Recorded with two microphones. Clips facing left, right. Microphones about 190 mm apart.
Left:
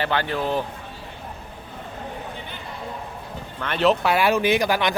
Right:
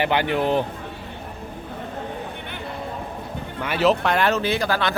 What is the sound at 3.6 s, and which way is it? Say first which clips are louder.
Speech: even; 5° right (ahead or behind).